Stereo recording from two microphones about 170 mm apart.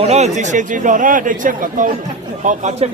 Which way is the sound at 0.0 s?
40° right (ahead or behind).